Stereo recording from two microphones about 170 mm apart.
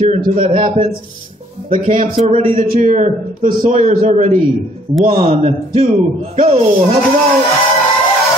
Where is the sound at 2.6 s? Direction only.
55° right (ahead or behind); by 7.0 s 35° right (ahead or behind).